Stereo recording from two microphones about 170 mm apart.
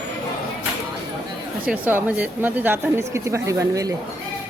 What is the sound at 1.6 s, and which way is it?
Speech, 10° right (ahead or behind).